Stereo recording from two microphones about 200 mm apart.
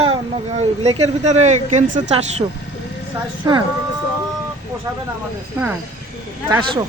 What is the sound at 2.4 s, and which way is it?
Speech, 25° right (ahead or behind).